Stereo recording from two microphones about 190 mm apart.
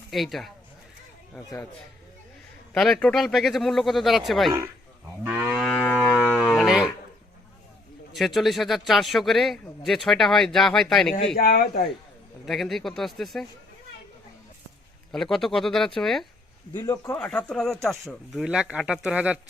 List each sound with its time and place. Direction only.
0.1 s speech: centre (ahead or behind)
2.7 s speech: 5° left (ahead or behind)
5.2 s livestock: 10° right (ahead or behind); by 6.2 s 5° left (ahead or behind)
6.2 s cattle: centre (ahead or behind)
8.1 s speech: centre (ahead or behind)
11.3 s speech: 55° left (ahead or behind)
12.5 s speech: centre (ahead or behind)
15.1 s speech: centre (ahead or behind)
16.7 s speech: 20° left (ahead or behind); by 19.4 s 5° right (ahead or behind)